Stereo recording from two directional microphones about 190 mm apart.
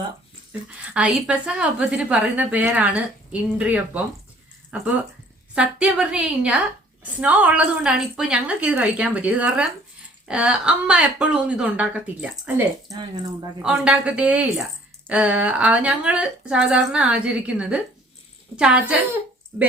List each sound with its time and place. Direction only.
0.9 s a woman's voice: 5° right (ahead or behind)
5.5 s a woman's voice: 5° right (ahead or behind)
12.9 s speech: 20° right (ahead or behind)
13.6 s a woman's voice: 5° right (ahead or behind)